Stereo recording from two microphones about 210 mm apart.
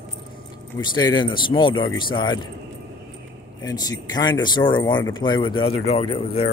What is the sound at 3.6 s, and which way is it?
Speech, 20° left (ahead or behind).